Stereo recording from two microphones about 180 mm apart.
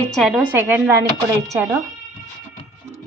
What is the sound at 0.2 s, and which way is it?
Speech, 5° right (ahead or behind).